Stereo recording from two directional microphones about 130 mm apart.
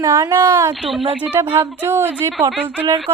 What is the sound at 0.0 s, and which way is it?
Speech, 25° right (ahead or behind).